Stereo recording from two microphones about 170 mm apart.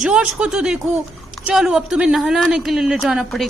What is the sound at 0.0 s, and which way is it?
Speech, 5° right (ahead or behind).